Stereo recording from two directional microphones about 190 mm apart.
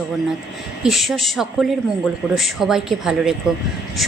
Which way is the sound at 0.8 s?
Centre (ahead or behind).